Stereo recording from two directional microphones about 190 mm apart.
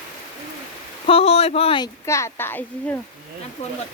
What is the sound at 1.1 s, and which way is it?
Speech, 30° left (ahead or behind).